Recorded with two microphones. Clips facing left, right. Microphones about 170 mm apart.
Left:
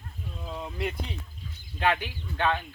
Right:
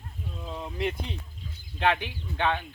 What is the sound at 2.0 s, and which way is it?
Speech, 15° right (ahead or behind).